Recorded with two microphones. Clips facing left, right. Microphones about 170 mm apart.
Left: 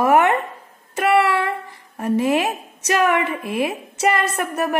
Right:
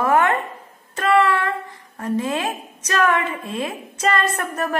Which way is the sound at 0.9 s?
15° left (ahead or behind).